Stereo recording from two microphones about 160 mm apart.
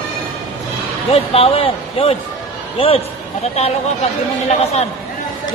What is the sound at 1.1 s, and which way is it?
A man's voice, 40° left (ahead or behind).